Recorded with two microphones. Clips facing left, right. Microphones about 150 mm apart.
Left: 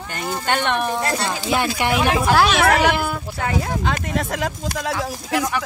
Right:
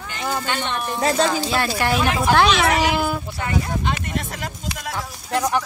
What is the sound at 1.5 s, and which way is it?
Speech, 15° left (ahead or behind).